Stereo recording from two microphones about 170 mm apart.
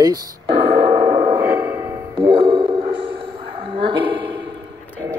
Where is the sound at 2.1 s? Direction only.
30° right (ahead or behind).